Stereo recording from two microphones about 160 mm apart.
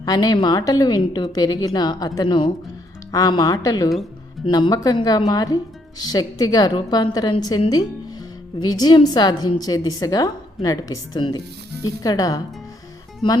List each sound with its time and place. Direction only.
0.0 s a woman's voice: 25° left (ahead or behind)